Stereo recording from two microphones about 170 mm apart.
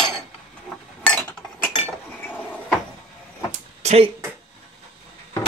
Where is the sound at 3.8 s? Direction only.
40° right (ahead or behind).